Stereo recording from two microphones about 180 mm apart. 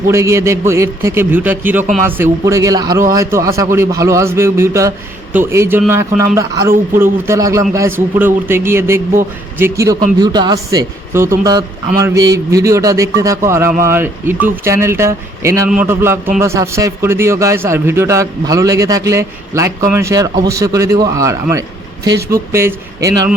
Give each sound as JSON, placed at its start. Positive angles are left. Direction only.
{"t": 0.1, "sound": "a man's voice", "side_deg": -15}